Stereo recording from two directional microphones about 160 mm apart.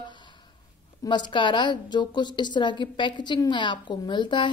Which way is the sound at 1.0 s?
30° left (ahead or behind).